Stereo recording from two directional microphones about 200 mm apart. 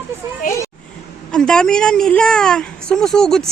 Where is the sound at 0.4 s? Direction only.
45° left (ahead or behind).